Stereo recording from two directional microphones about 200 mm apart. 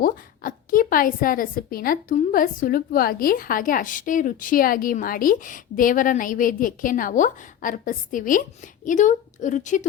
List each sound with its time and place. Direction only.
0.0 s a woman's voice: 45° left (ahead or behind)